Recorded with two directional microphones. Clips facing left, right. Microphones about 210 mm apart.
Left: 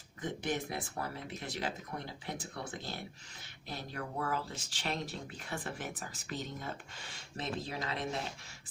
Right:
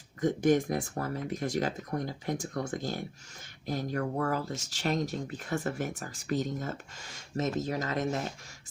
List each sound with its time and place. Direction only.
0.2 s speech: 45° right (ahead or behind)